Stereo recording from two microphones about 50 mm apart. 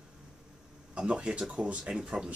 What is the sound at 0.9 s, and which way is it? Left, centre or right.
Speech, centre.